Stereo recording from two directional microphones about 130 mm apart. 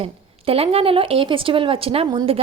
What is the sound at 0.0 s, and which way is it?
A woman's voice, 50° right (ahead or behind).